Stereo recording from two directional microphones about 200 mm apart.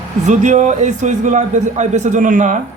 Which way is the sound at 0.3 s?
35° right (ahead or behind).